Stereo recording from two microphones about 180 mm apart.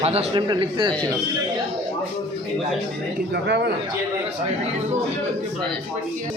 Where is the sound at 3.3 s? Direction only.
70° right (ahead or behind).